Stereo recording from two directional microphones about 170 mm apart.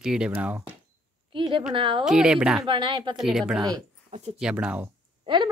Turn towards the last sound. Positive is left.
turn(degrees=-30)  # may be behind; listen again after turning